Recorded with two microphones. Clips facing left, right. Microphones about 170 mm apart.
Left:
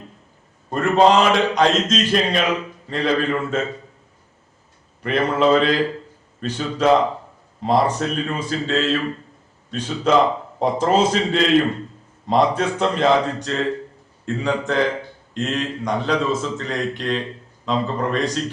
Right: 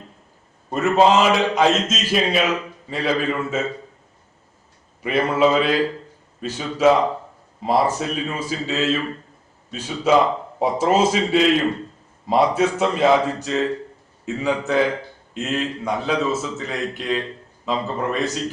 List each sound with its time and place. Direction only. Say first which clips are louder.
0.7 s a man's voice: left 1 dB; 5° right (ahead or behind)
5.0 s a man's voice: even; 5° right (ahead or behind)